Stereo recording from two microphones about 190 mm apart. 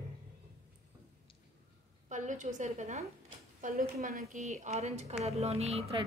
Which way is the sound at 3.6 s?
50° right (ahead or behind).